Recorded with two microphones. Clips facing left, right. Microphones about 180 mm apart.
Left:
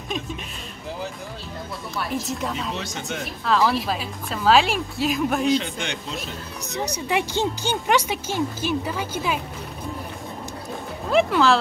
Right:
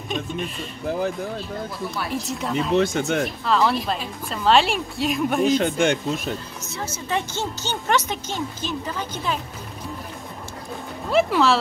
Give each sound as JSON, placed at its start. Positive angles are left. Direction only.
{"t": 2.0, "sound": "a woman's voice", "side_deg": 0}
{"t": 2.7, "sound": "speech", "side_deg": -55}
{"t": 3.4, "sound": "a woman's voice", "side_deg": 0}
{"t": 5.5, "sound": "speech", "side_deg": -50}
{"t": 6.7, "sound": "speech", "side_deg": 15}
{"t": 11.1, "sound": "a woman's voice", "side_deg": 0}